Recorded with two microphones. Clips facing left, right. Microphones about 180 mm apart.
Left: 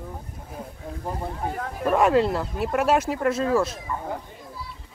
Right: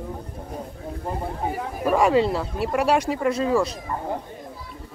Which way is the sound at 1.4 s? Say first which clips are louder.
Right 1 dB; 10° right (ahead or behind).